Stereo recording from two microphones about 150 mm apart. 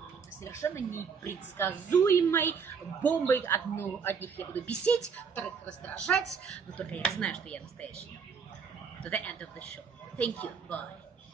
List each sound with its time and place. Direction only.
0.4 s a woman's voice: 20° left (ahead or behind)
9.0 s a woman's voice: 10° left (ahead or behind)